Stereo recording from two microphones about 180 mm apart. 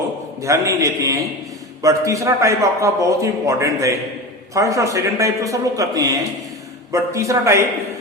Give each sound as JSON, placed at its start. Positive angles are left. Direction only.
{"t": 0.4, "sound": "a man's voice", "side_deg": -15}